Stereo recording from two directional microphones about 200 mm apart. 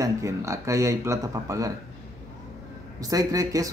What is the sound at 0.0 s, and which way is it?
Speech, 15° right (ahead or behind).